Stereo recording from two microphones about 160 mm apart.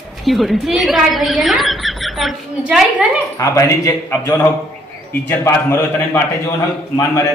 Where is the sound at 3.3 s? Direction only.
20° left (ahead or behind).